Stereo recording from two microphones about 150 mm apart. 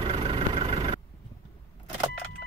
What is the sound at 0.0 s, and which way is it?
Vehicle, 40° right (ahead or behind).